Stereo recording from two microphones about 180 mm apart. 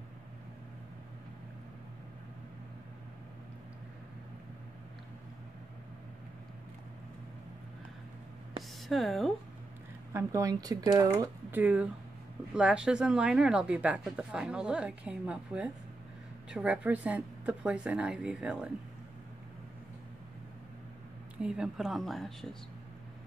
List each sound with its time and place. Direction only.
8.8 s a woman's voice: centre (ahead or behind)
10.1 s a woman's voice: 20° right (ahead or behind)
21.4 s a woman's voice: 5° right (ahead or behind)